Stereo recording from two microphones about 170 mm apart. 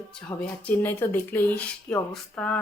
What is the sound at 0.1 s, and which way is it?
Speech, 5° left (ahead or behind).